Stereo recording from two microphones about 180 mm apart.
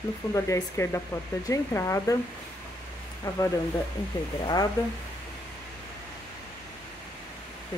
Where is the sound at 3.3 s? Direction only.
15° left (ahead or behind).